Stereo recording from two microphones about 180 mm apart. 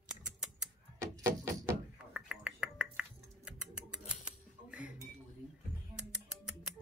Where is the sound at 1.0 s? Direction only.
15° right (ahead or behind).